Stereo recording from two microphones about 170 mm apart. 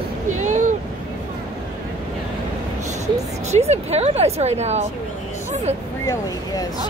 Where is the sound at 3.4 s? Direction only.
40° right (ahead or behind).